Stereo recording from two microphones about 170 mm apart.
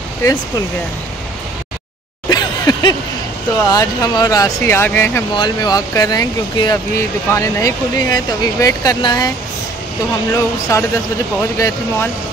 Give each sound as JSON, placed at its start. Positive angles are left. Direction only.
{"t": 2.2, "sound": "a sound", "side_deg": 25}
{"t": 3.6, "sound": "speech", "side_deg": 20}
{"t": 5.3, "sound": "speech", "side_deg": 25}
{"t": 10.3, "sound": "speech", "side_deg": 20}